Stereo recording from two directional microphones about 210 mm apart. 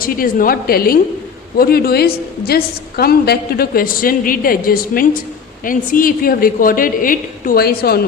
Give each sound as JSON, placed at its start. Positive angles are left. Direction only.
{"t": 0.0, "sound": "a woman's voice", "side_deg": 45}